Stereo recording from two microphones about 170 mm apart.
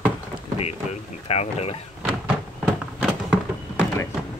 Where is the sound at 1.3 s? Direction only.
40° left (ahead or behind).